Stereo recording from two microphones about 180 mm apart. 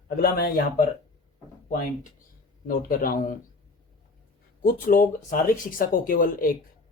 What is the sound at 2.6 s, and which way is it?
Speech, 50° left (ahead or behind).